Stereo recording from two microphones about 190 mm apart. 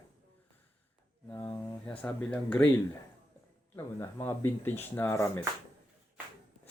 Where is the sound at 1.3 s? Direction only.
15° left (ahead or behind).